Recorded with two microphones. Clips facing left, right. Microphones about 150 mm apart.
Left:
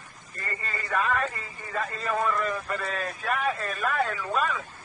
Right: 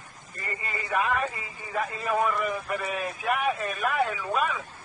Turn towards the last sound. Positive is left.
turn(degrees=-5)  # may be behind; listen again after turning